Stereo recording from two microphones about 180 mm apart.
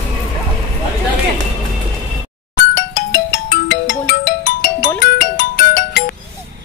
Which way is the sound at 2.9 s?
55° left (ahead or behind).